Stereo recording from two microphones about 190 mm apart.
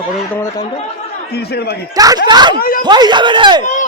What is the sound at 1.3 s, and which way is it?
Speech, 60° left (ahead or behind).